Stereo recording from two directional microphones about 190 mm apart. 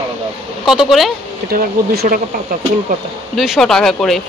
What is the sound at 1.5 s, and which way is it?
Speech, 50° right (ahead or behind).